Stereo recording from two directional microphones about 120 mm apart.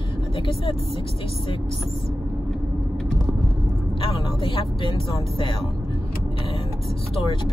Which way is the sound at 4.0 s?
45° left (ahead or behind).